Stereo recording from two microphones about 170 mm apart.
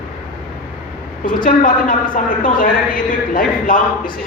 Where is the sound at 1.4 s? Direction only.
55° left (ahead or behind).